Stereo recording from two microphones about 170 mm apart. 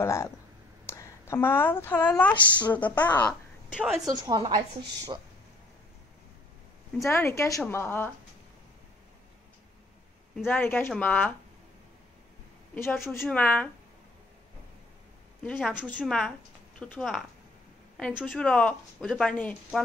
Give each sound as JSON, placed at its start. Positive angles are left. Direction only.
{"t": 0.0, "sound": "a woman's voice", "side_deg": 15}
{"t": 3.7, "sound": "speech", "side_deg": -5}
{"t": 4.0, "sound": "a woman's voice", "side_deg": -25}
{"t": 7.1, "sound": "a woman's voice", "side_deg": 15}
{"t": 10.4, "sound": "a woman's voice", "side_deg": 10}
{"t": 12.7, "sound": "a woman's voice", "side_deg": 15}
{"t": 16.0, "sound": "speech", "side_deg": 5}